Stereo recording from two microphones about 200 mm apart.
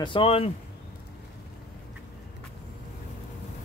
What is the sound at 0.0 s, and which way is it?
Speech, 25° left (ahead or behind).